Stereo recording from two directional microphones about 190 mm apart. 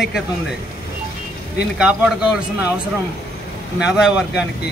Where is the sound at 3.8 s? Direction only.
5° right (ahead or behind).